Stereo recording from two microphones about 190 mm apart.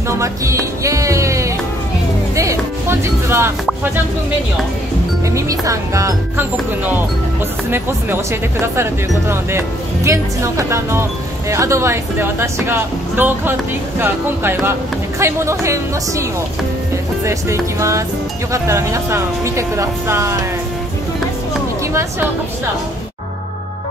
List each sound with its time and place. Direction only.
0.2 s music: 15° right (ahead or behind)
5.3 s speech: 15° right (ahead or behind)
7.7 s speech: 10° right (ahead or behind)